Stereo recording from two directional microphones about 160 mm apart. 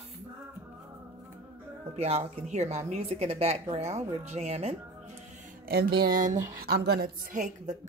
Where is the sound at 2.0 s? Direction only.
40° right (ahead or behind).